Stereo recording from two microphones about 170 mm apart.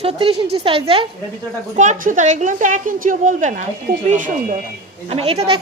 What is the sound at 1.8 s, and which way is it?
A woman's voice, 50° right (ahead or behind).